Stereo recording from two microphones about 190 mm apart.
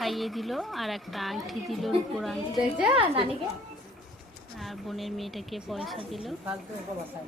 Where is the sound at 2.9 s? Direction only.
30° right (ahead or behind).